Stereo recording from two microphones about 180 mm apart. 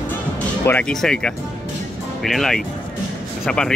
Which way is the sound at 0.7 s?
5° left (ahead or behind).